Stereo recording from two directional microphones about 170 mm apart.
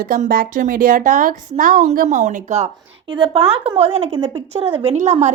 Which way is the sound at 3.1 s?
30° right (ahead or behind).